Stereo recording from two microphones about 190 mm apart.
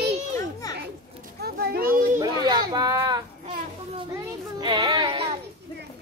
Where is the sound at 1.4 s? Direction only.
55° right (ahead or behind).